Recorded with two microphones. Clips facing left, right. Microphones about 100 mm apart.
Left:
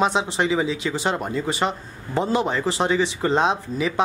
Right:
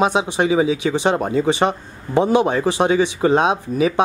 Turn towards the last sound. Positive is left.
turn(degrees=-15)  # may be behind; listen again after turning